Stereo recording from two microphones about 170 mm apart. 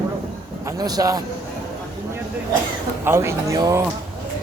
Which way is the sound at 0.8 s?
20° right (ahead or behind).